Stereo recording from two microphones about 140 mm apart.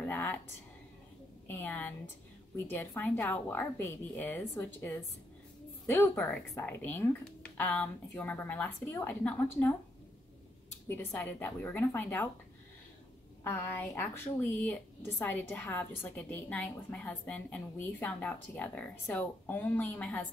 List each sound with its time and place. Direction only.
0.0 s speech: 10° left (ahead or behind)
1.5 s a woman's voice: 15° left (ahead or behind)
3.0 s a woman's voice: 15° left (ahead or behind)
11.1 s a woman's voice: 10° left (ahead or behind)
13.4 s a woman's voice: 15° left (ahead or behind)